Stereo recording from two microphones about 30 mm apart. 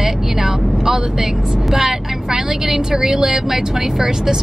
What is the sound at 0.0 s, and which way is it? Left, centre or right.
Vehicle, centre.